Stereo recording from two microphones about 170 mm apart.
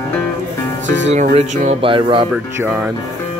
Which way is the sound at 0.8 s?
90° right.